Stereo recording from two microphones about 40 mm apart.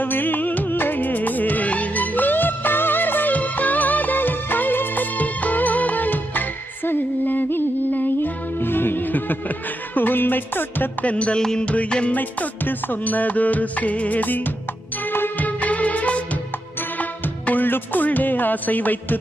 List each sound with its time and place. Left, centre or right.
0.0 s music: left
3.3 s music: left
5.1 s music: left
11.0 s music: left
11.3 s music: centre
11.6 s music: left
11.9 s music: left
12.1 s music: left
15.0 s music: left
15.4 s music: left